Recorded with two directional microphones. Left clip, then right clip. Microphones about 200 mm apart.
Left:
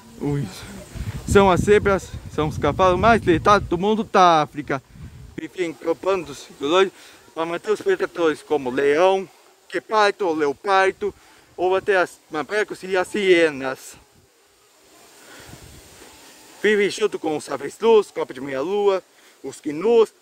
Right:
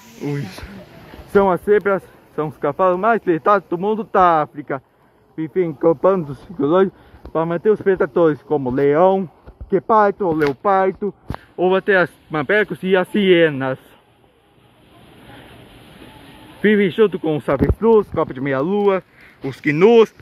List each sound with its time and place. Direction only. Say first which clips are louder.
0.2 s speech: even; 10° left (ahead or behind)
1.3 s speech: even; 35° left (ahead or behind)
11.5 s speech: right 4 dB; 15° left (ahead or behind)
16.6 s speech: right 4 dB; 25° left (ahead or behind)
18.1 s speech: right 6 dB; 15° left (ahead or behind)